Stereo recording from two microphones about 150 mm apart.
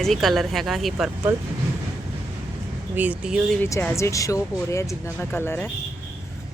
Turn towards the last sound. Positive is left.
turn(degrees=15)  # may be behind; listen again after turning